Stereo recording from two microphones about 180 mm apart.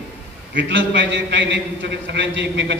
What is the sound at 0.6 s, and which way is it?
A man's voice, 90° right.